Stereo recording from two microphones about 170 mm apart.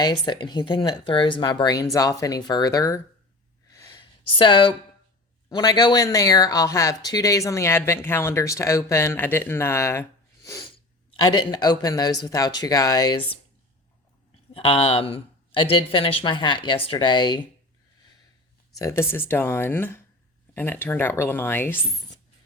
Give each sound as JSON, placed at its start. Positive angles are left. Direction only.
{"t": 0.0, "sound": "speech", "side_deg": 25}
{"t": 3.7, "sound": "gasp", "side_deg": 20}
{"t": 4.3, "sound": "speech", "side_deg": 30}
{"t": 14.5, "sound": "speech", "side_deg": 35}
{"t": 18.7, "sound": "speech", "side_deg": 20}